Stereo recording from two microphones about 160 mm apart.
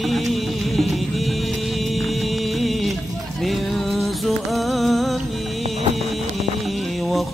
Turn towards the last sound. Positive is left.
turn(degrees=0)  # may be behind; listen again after turning